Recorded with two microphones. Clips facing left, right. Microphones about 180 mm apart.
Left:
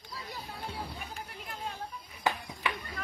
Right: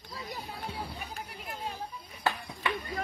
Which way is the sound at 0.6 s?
10° right (ahead or behind).